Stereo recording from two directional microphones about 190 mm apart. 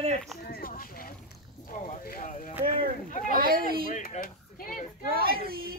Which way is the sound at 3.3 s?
50° right (ahead or behind).